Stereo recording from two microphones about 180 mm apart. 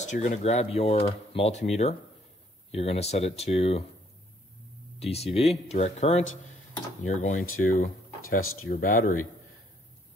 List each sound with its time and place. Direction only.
0.0 s speech: 40° left (ahead or behind)
4.9 s speech: 35° left (ahead or behind); by 9.2 s 55° left (ahead or behind)